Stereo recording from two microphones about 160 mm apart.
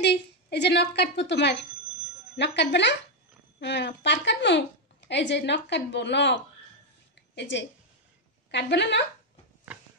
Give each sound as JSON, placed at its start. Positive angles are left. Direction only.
{"t": 0.0, "sound": "a woman's voice", "side_deg": 90}
{"t": 7.2, "sound": "a sound", "side_deg": 90}
{"t": 8.5, "sound": "a woman's voice", "side_deg": 90}